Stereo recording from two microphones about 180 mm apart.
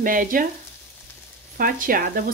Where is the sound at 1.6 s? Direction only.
50° right (ahead or behind).